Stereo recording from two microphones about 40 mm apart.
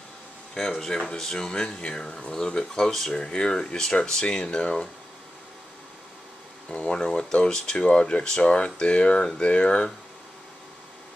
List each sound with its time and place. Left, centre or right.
0.6 s speech: centre
6.7 s speech: left